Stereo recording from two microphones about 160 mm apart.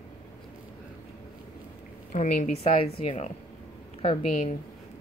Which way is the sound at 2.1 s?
50° left (ahead or behind).